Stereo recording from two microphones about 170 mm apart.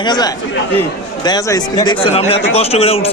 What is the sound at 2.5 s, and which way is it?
Speech, 35° left (ahead or behind).